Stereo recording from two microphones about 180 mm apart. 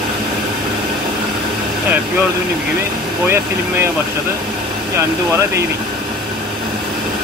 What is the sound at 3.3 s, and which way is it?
Speech, 15° right (ahead or behind).